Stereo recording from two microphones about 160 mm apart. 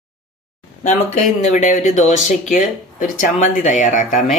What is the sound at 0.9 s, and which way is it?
Speech, 45° left (ahead or behind).